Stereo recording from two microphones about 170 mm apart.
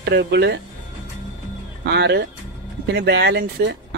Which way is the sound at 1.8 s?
80° right.